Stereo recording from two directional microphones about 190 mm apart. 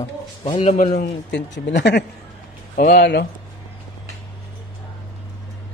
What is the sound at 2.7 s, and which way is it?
Speech, 50° left (ahead or behind).